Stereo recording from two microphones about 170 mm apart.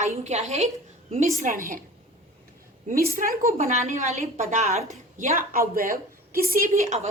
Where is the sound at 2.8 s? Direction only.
55° right (ahead or behind).